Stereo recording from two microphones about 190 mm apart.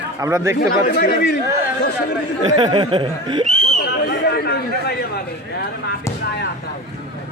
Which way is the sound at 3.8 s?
55° left (ahead or behind).